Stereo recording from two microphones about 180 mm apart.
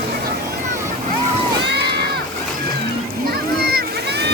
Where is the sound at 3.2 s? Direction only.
60° right (ahead or behind).